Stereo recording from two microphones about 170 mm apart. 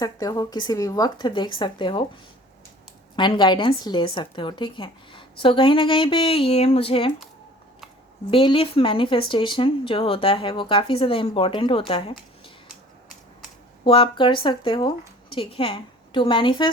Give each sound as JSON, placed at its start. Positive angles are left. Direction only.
{"t": 0.0, "sound": "speech", "side_deg": 20}
{"t": 3.2, "sound": "a woman's voice", "side_deg": 25}
{"t": 8.3, "sound": "a woman's voice", "side_deg": 30}
{"t": 13.8, "sound": "a woman's voice", "side_deg": 30}